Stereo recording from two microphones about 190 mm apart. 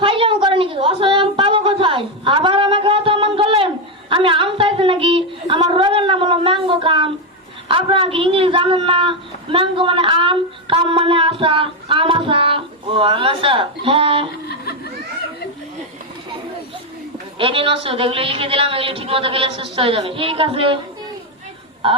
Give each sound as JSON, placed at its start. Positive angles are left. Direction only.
{"t": 0.0, "sound": "a sound", "side_deg": -25}
{"t": 7.7, "sound": "a woman's voice", "side_deg": -30}
{"t": 14.4, "sound": "laughter", "side_deg": 55}
{"t": 17.3, "sound": "a woman's voice", "side_deg": -30}
{"t": 21.8, "sound": "speech", "side_deg": -30}